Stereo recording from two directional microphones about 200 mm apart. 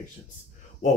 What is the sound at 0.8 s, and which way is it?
Speech, 35° left (ahead or behind).